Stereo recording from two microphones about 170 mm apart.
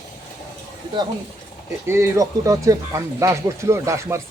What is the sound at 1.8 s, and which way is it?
Speech, 15° right (ahead or behind).